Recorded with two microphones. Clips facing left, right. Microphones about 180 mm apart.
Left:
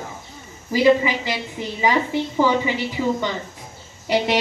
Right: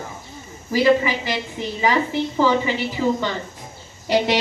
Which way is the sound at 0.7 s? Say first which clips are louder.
Left 1 dB; 15° left (ahead or behind).